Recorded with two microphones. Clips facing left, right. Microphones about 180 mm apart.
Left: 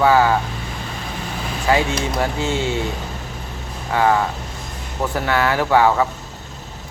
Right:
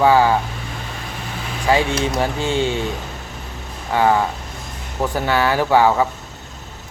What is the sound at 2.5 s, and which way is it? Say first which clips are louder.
Speech: right 2 dB; 15° right (ahead or behind).